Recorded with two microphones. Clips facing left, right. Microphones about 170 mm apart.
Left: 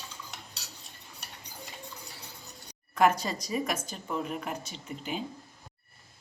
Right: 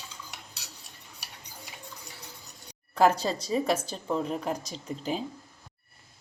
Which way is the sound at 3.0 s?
30° right (ahead or behind).